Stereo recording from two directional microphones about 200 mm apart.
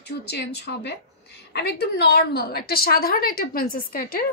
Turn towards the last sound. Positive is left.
turn(degrees=45)  # may be behind; listen again after turning